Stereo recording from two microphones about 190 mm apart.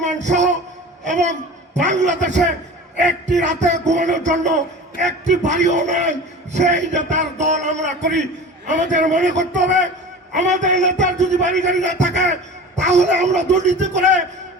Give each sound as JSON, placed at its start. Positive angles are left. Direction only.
{"t": 0.0, "sound": "a sound", "side_deg": -40}
{"t": 1.0, "sound": "a man's voice", "side_deg": -40}
{"t": 3.3, "sound": "a man's voice", "side_deg": -40}